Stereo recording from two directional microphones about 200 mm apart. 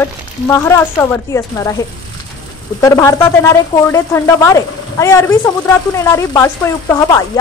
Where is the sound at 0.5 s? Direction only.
10° left (ahead or behind).